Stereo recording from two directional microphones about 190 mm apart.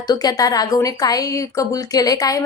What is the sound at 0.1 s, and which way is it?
A woman's voice, 20° left (ahead or behind).